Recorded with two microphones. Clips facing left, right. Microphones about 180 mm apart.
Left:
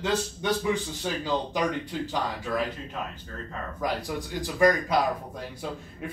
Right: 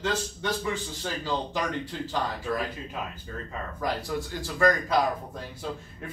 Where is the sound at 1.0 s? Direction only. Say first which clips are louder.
Left 2 dB; 15° left (ahead or behind).